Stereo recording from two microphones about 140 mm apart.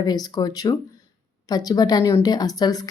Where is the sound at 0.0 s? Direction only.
30° left (ahead or behind).